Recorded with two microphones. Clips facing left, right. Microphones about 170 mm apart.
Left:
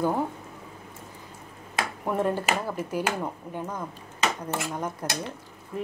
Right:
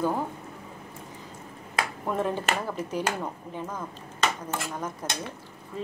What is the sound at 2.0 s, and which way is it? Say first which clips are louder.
Speech: left 3 dB; 10° left (ahead or behind).